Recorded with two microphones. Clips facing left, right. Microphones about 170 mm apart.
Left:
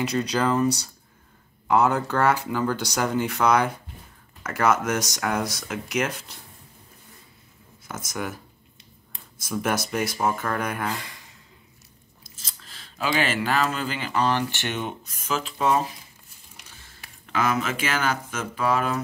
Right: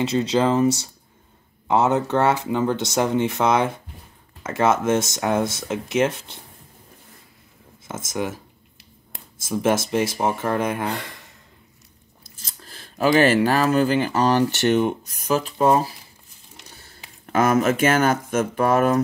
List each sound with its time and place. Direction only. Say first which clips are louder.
0.0 s speech: right 4 dB; 25° right (ahead or behind)
7.9 s speech: right 5 dB; 25° right (ahead or behind)
9.4 s speech: right 5 dB; 25° right (ahead or behind)
12.7 s speech: right 8 dB; 45° right (ahead or behind)
16.6 s a sound: right 6 dB; 35° right (ahead or behind)
17.3 s speech: right 7 dB; 45° right (ahead or behind)